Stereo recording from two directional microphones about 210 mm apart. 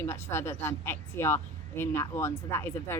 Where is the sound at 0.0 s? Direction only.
10° left (ahead or behind).